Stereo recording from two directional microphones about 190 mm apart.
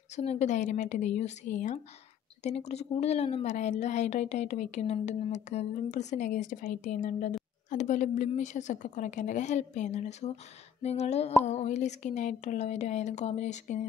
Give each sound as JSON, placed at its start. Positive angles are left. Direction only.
{"t": 0.1, "sound": "a woman's voice", "side_deg": 35}